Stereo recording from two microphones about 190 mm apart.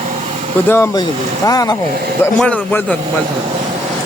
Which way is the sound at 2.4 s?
5° left (ahead or behind).